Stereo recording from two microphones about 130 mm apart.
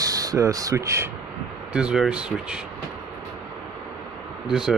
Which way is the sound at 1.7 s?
5° right (ahead or behind).